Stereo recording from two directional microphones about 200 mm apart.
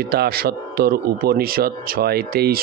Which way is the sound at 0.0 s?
50° right (ahead or behind).